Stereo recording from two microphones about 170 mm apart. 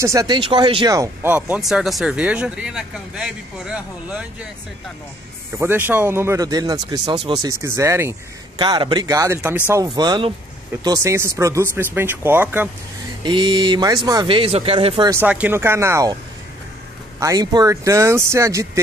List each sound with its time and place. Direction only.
0.0 s speech: 20° right (ahead or behind)
0.4 s speech: 30° right (ahead or behind)
1.3 s speech: 5° right (ahead or behind)
5.6 s speech: 10° right (ahead or behind)
13.2 s speech: 25° right (ahead or behind)
15.0 s speech: 10° right (ahead or behind)
17.2 s speech: 20° right (ahead or behind)